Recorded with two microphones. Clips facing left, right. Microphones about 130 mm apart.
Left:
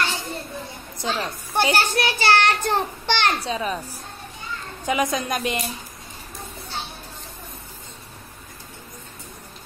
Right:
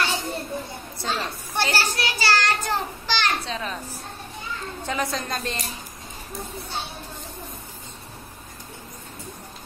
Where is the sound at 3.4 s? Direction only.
10° left (ahead or behind).